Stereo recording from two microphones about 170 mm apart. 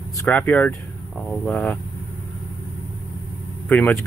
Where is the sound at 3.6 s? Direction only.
10° left (ahead or behind).